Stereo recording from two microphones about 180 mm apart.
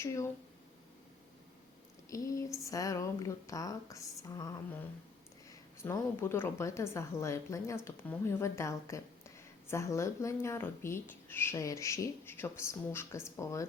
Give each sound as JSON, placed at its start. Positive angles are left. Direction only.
{"t": 0.0, "sound": "speech", "side_deg": 15}
{"t": 2.0, "sound": "speech", "side_deg": 20}
{"t": 5.8, "sound": "speech", "side_deg": 15}